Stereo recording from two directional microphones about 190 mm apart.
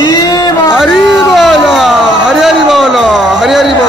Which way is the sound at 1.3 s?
Centre (ahead or behind).